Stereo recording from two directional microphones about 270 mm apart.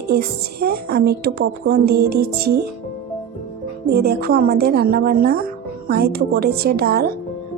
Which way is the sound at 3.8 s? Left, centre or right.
Right.